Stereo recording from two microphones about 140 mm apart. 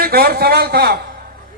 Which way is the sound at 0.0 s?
90° right.